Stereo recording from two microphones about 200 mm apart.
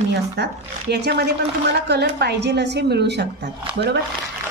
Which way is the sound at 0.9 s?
55° right (ahead or behind).